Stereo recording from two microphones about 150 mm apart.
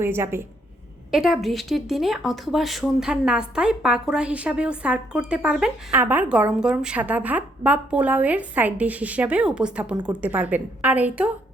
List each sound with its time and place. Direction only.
0.0 s speech: 15° right (ahead or behind)
1.1 s speech: 5° right (ahead or behind)
9.9 s speech: 30° right (ahead or behind)
10.2 s speech: 10° right (ahead or behind)